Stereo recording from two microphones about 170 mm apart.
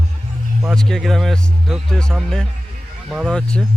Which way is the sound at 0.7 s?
5° left (ahead or behind).